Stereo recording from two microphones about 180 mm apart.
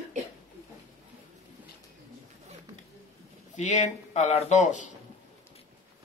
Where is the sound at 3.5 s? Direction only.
40° left (ahead or behind).